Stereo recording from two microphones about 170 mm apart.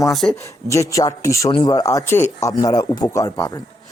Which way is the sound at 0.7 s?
20° left (ahead or behind).